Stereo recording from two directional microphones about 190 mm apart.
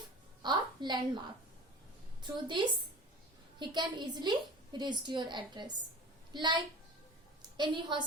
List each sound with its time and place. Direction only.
0.4 s a woman's voice: 25° right (ahead or behind)
2.2 s a woman's voice: 25° right (ahead or behind)